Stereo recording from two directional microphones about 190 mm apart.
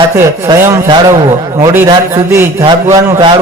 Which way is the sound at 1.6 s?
15° right (ahead or behind).